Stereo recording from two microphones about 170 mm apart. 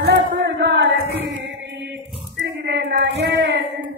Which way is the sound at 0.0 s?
85° right.